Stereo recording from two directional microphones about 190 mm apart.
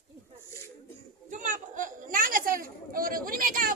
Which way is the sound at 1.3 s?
45° right (ahead or behind).